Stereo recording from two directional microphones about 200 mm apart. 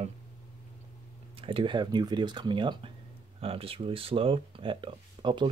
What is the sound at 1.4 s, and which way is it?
Speech, 25° right (ahead or behind).